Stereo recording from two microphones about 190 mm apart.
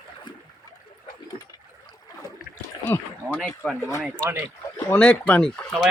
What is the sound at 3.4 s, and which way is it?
Speech, centre (ahead or behind).